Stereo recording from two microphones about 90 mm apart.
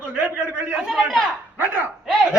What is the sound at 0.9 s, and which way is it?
Speech, 5° left (ahead or behind).